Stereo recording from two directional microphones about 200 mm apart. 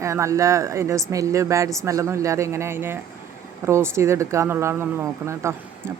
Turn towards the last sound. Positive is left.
turn(degrees=-15)  # may be behind; listen again after turning